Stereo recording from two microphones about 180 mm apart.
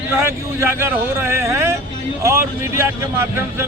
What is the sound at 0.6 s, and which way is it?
Speech, 15° right (ahead or behind).